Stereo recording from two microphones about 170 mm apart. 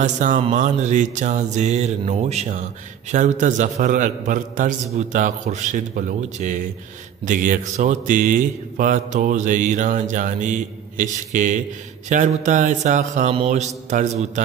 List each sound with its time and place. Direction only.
0.0 s speech: 45° right (ahead or behind)